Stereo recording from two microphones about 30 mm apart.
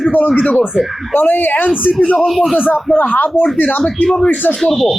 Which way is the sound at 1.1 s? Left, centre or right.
Left.